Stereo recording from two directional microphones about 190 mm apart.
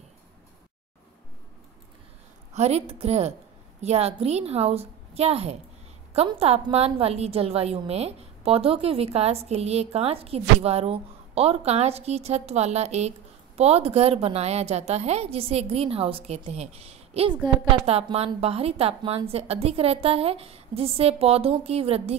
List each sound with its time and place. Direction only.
2.5 s a woman's voice: 35° right (ahead or behind)